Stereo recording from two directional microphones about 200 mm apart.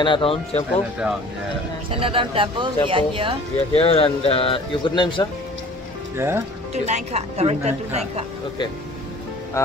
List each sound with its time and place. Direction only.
0.0 s speech: 25° left (ahead or behind)
1.9 s speech: 25° right (ahead or behind)
3.7 s speech: 30° left (ahead or behind)
6.1 s speech: 10° right (ahead or behind)
6.7 s speech: 35° right (ahead or behind)